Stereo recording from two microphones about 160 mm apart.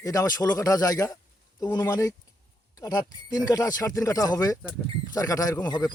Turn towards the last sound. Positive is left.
turn(degrees=25)  # may be behind; listen again after turning